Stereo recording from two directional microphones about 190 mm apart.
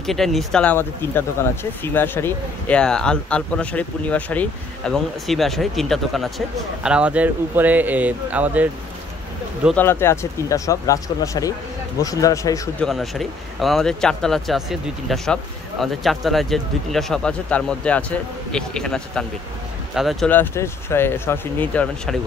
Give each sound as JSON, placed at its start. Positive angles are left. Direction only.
{"t": 0.0, "sound": "speech", "side_deg": 0}
{"t": 9.8, "sound": "speech", "side_deg": 10}
{"t": 12.8, "sound": "speech", "side_deg": 0}